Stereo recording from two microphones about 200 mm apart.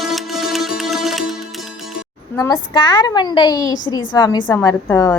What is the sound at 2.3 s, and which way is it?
A woman's voice, 20° left (ahead or behind).